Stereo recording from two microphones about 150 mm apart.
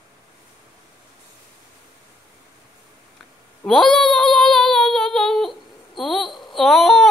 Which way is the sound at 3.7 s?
5° left (ahead or behind).